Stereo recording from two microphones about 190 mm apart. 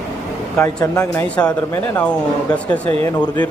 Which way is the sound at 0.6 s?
15° left (ahead or behind).